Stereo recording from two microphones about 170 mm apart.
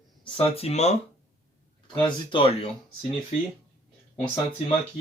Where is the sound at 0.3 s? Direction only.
35° left (ahead or behind).